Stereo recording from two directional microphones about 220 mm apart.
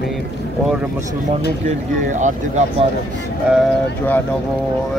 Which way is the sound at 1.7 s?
35° right (ahead or behind).